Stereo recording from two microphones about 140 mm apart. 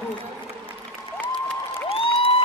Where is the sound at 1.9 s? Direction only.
40° left (ahead or behind).